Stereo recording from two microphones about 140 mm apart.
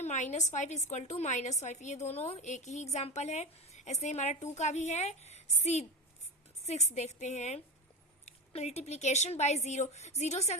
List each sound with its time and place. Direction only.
0.0 s a woman's voice: 60° left (ahead or behind)